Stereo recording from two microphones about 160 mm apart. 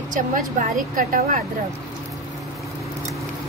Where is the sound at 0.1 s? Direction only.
55° right (ahead or behind).